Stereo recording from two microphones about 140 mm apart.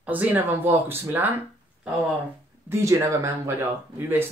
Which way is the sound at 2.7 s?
20° right (ahead or behind).